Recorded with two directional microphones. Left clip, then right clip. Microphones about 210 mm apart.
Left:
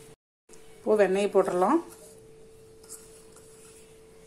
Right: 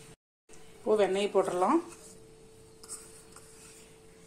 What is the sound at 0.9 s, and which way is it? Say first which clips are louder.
Speech: left 4 dB; 20° left (ahead or behind).